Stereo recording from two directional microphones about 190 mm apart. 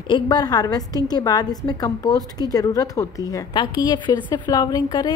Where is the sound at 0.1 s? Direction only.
20° left (ahead or behind).